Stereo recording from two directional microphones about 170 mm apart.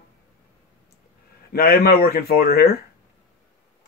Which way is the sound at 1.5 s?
65° left (ahead or behind).